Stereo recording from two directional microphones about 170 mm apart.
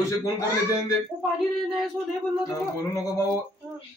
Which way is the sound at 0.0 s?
20° left (ahead or behind).